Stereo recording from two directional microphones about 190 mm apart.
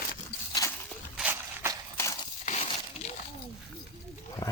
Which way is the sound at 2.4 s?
35° left (ahead or behind).